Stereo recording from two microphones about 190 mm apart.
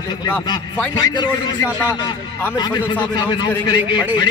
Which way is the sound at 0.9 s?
20° left (ahead or behind).